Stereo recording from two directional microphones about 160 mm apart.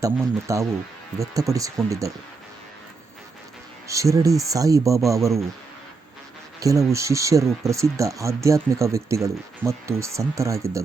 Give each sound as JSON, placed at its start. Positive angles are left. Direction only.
{"t": 0.0, "sound": "speech", "side_deg": -20}
{"t": 3.8, "sound": "speech", "side_deg": -20}
{"t": 6.6, "sound": "speech", "side_deg": -20}